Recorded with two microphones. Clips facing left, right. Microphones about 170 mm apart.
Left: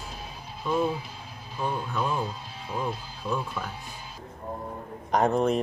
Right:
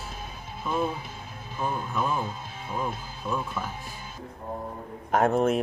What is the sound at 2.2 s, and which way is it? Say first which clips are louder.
Speech: right 1 dB; 50° right (ahead or behind).